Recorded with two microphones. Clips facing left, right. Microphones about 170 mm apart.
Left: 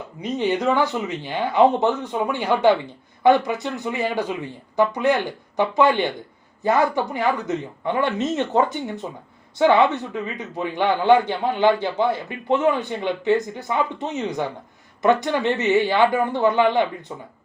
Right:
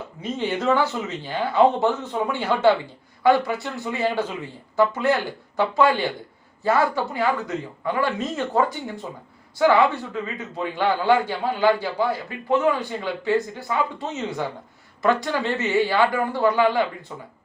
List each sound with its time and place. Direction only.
0.2 s a man's voice: 15° left (ahead or behind)